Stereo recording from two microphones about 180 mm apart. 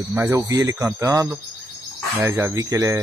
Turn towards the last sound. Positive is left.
turn(degrees=-15)  # may be behind; listen again after turning